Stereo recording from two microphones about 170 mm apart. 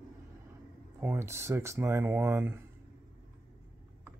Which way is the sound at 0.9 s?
15° right (ahead or behind).